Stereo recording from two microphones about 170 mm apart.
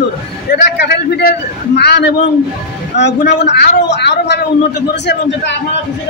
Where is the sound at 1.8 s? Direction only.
80° left.